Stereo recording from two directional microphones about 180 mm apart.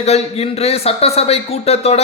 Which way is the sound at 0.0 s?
35° left (ahead or behind).